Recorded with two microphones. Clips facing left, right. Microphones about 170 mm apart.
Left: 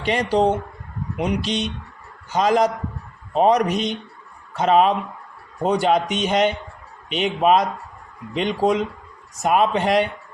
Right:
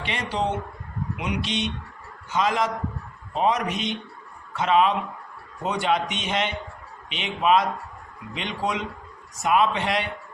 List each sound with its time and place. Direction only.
0.0 s a man's voice: 40° left (ahead or behind)